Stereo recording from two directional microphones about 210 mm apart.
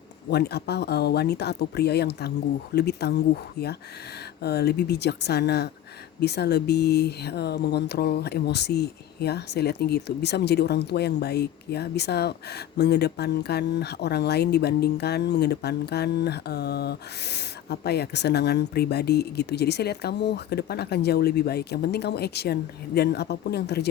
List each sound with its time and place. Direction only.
0.3 s speech: 50° left (ahead or behind)
4.4 s speech: 50° left (ahead or behind)